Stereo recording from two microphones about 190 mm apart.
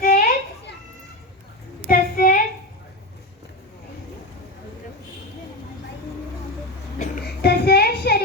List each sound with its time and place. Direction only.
0.0 s children playing: 45° left (ahead or behind)
1.9 s child singing: 45° left (ahead or behind)
7.4 s a sound: 55° left (ahead or behind)